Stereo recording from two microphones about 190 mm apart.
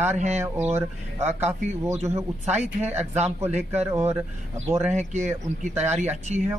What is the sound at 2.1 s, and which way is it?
Speech, 35° right (ahead or behind).